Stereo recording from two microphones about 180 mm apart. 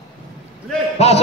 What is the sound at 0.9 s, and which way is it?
Speech, 35° left (ahead or behind).